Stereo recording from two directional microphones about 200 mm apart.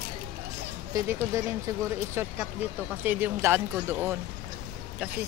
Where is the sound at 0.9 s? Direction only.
15° right (ahead or behind).